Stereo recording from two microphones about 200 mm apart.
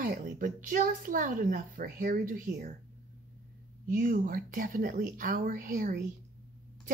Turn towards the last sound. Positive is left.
turn(degrees=-45)  # may be behind; listen again after turning